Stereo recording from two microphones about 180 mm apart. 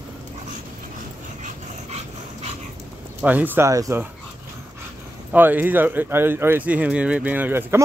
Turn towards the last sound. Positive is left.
turn(degrees=-10)  # may be behind; listen again after turning